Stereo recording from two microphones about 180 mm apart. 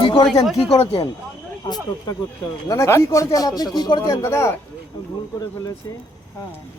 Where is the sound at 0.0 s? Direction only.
30° left (ahead or behind).